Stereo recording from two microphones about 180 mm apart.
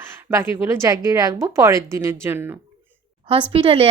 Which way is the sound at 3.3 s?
30° right (ahead or behind).